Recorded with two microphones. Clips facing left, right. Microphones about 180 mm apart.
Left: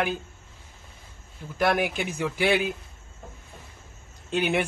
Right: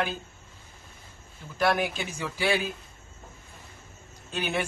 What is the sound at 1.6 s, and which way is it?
A man's voice, 15° left (ahead or behind).